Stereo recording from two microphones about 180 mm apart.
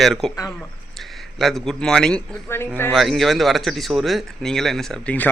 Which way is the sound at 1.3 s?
Centre (ahead or behind).